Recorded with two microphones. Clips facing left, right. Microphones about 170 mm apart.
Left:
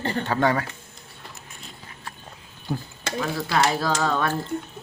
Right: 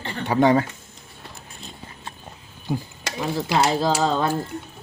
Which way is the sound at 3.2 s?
20° right (ahead or behind).